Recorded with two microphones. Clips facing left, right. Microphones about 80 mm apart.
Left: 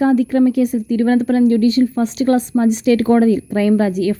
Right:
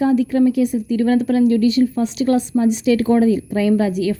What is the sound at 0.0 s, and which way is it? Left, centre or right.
Speech, left.